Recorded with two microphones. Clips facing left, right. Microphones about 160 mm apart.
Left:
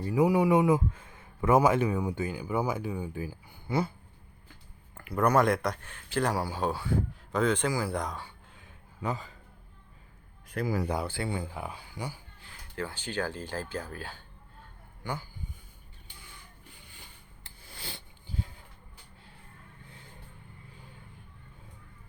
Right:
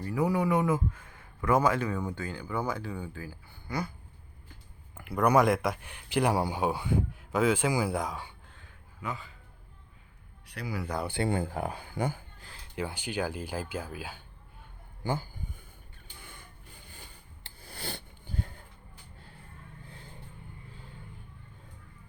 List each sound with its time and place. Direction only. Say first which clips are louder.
0.0 s speech: left 4 dB; 15° left (ahead or behind)
0.9 s a sound: left 4 dB; 25° left (ahead or behind)
1.5 s speech: left 3 dB; 15° left (ahead or behind)
5.2 s speech: right 1 dB; 5° right (ahead or behind)
5.9 s speech: right 3 dB; 15° right (ahead or behind)
9.0 s a man's voice: left 4 dB; 40° left (ahead or behind)
10.5 s speech: left 6 dB; 45° left (ahead or behind)
11.3 s speech: right 5 dB; 50° right (ahead or behind)
12.7 s speech: right 1 dB; 15° right (ahead or behind)
16.2 s rub: right 2 dB; 50° right (ahead or behind)
17.4 s a sound: right 4 dB; 40° right (ahead or behind)
17.8 s sniff: right 5 dB; 55° right (ahead or behind)